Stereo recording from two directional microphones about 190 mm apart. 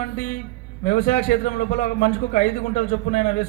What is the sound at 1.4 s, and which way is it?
A man's voice, 45° left (ahead or behind).